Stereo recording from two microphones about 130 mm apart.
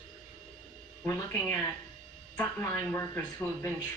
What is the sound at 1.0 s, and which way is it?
Speech, 15° left (ahead or behind).